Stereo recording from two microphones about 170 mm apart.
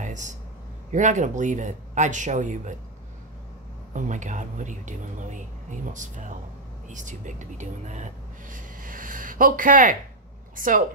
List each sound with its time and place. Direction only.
0.0 s a sound: 45° right (ahead or behind)
0.9 s speech: 45° right (ahead or behind)
3.9 s speech: 45° right (ahead or behind)